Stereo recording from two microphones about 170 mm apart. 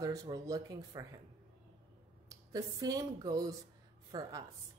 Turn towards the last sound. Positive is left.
turn(degrees=-20)  # may be behind; listen again after turning